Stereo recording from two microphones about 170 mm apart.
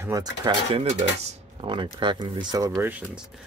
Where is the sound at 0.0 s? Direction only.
20° right (ahead or behind).